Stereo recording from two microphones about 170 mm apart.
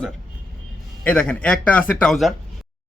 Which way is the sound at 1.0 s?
5° left (ahead or behind).